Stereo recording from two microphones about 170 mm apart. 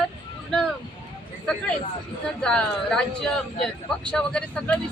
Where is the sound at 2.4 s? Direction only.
5° left (ahead or behind).